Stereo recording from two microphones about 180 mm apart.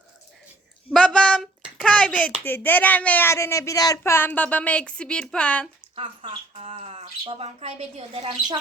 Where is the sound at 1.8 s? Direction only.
5° left (ahead or behind).